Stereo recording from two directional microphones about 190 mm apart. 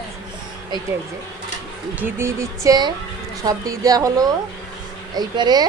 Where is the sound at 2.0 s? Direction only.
15° right (ahead or behind).